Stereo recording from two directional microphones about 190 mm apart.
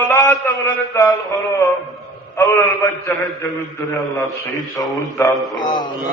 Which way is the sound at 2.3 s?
15° left (ahead or behind).